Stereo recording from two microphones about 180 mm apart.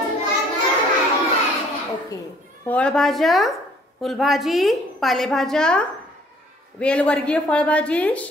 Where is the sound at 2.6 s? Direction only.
5° left (ahead or behind).